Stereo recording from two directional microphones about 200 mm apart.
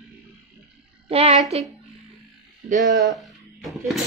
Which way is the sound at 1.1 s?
30° right (ahead or behind).